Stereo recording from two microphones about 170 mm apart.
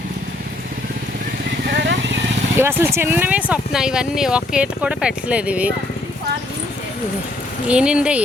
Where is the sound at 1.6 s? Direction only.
85° right.